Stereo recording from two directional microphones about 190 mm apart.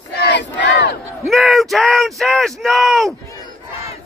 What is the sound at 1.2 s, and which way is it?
Speech, centre (ahead or behind).